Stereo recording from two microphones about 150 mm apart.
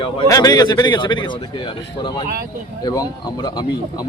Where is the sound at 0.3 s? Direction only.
25° left (ahead or behind).